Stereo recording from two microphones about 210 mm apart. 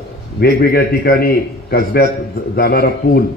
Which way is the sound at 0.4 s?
50° left (ahead or behind).